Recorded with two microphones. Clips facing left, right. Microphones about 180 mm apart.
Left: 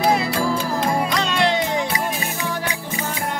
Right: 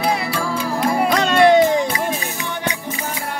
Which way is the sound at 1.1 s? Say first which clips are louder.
Right 7 dB; 50° right (ahead or behind).